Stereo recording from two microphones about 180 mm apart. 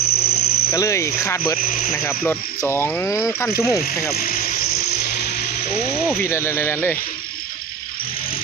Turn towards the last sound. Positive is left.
turn(degrees=15)  # may be behind; listen again after turning